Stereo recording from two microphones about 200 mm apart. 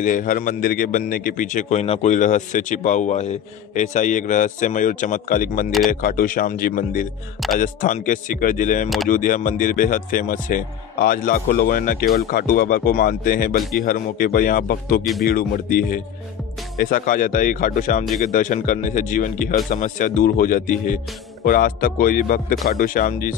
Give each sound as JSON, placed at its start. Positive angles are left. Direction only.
{"t": 0.0, "sound": "a man's voice", "side_deg": 40}
{"t": 8.8, "sound": "speech", "side_deg": 0}
{"t": 9.1, "sound": "a man's voice", "side_deg": 40}